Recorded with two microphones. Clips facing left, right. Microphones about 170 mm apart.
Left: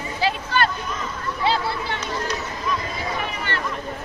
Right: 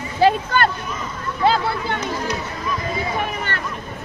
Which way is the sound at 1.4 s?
50° right (ahead or behind).